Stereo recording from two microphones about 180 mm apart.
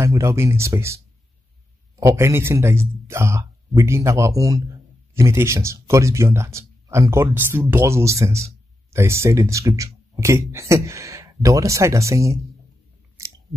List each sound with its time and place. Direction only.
0.0 s speech: 15° right (ahead or behind)